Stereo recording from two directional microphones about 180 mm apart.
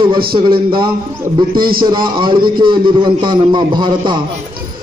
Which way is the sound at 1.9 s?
25° right (ahead or behind).